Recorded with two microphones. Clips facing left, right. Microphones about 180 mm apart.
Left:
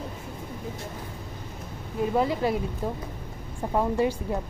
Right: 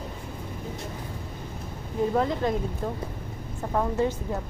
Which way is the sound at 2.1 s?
10° left (ahead or behind).